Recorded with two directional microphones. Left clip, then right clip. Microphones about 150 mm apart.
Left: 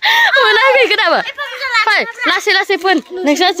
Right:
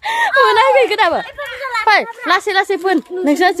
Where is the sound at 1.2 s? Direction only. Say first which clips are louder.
Left 4 dB; 55° right (ahead or behind).